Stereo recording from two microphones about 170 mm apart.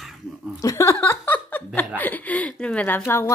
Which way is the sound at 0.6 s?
20° left (ahead or behind).